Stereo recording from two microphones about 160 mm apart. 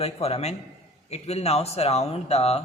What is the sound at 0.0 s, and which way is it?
A man's voice, 40° left (ahead or behind).